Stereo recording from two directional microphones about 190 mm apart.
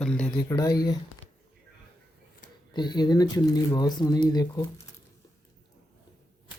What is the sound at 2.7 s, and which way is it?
Speech, 25° left (ahead or behind).